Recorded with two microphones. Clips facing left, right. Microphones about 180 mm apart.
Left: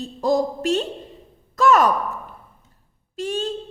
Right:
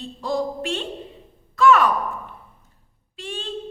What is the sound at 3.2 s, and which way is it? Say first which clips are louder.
Speech: left 8 dB; 40° left (ahead or behind).